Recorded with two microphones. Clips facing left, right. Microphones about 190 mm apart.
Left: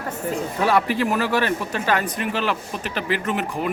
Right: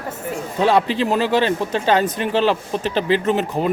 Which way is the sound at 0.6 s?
25° right (ahead or behind).